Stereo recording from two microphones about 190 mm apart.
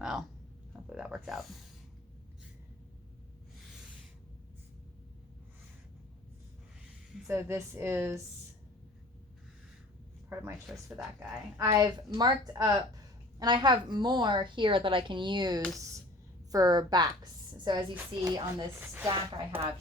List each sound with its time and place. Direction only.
0.0 s a sound: 5° right (ahead or behind)
0.9 s speech: 5° right (ahead or behind)
7.3 s a woman's voice: 15° right (ahead or behind)
10.3 s a woman's voice: 15° right (ahead or behind)
10.7 s speech: centre (ahead or behind)
11.5 s a woman's voice: 15° right (ahead or behind)